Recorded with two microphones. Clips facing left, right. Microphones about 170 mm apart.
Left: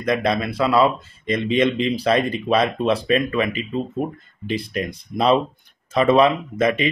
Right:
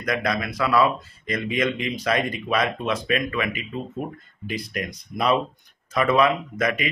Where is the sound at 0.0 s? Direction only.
25° left (ahead or behind).